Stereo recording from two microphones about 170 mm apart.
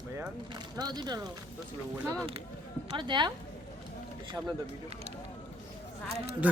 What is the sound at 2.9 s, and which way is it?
Speech, 25° right (ahead or behind).